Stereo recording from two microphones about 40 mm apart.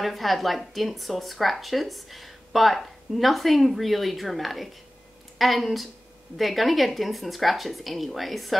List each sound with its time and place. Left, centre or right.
0.0 s speech: centre